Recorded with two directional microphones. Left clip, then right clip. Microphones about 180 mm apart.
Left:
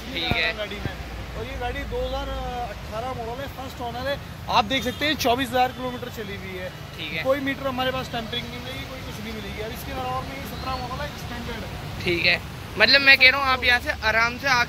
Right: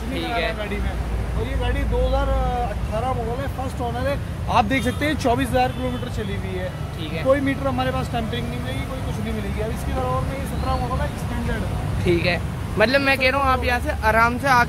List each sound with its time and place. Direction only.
0.1 s a sound: 10° right (ahead or behind)
4.5 s speech: 10° left (ahead or behind)
5.3 s speech: 30° left (ahead or behind)
7.2 s speech: 40° left (ahead or behind)
12.0 s a man's voice: centre (ahead or behind); by 14.7 s 15° right (ahead or behind)